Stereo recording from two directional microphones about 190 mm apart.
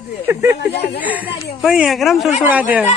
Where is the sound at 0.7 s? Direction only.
60° left (ahead or behind).